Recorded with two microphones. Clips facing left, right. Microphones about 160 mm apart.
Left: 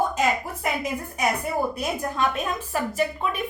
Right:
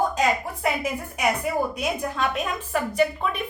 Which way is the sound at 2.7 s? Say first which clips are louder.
Right 4 dB; centre (ahead or behind).